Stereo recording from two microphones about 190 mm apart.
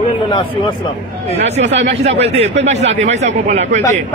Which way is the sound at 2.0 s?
35° right (ahead or behind).